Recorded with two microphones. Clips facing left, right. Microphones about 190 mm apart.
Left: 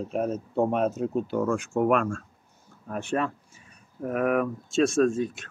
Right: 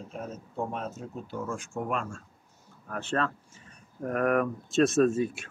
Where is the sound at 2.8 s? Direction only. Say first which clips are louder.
Left 2 dB; 15° left (ahead or behind); by 5.4 s 5° right (ahead or behind).